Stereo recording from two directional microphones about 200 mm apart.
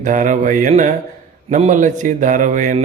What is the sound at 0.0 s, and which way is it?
Speech, 40° right (ahead or behind).